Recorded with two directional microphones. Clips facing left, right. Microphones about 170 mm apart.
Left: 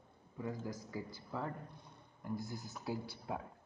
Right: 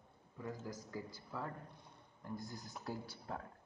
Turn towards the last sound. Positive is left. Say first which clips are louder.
# left 4 dB
turn(degrees=10)  # may be behind; listen again after turning